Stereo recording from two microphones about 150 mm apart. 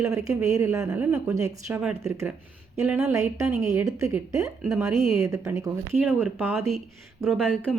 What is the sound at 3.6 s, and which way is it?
Speech, 20° right (ahead or behind).